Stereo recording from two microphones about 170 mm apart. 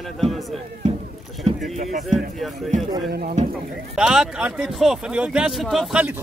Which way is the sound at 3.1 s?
65° right (ahead or behind).